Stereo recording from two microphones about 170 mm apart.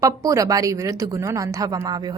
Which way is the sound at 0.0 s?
20° right (ahead or behind).